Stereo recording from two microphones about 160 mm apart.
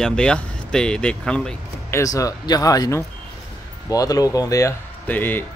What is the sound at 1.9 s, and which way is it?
Speech, 20° left (ahead or behind).